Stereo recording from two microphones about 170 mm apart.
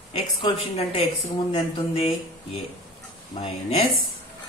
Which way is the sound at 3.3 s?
35° left (ahead or behind).